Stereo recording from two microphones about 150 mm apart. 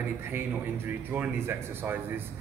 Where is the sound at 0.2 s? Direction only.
15° right (ahead or behind).